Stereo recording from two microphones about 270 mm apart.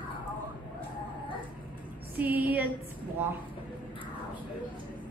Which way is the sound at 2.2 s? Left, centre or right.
Centre.